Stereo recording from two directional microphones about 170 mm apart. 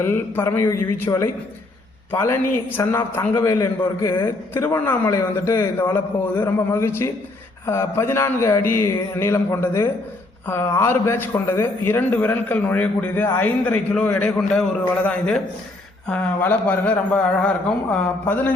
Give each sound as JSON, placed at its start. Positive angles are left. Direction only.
{"t": 0.0, "sound": "a man's voice", "side_deg": 15}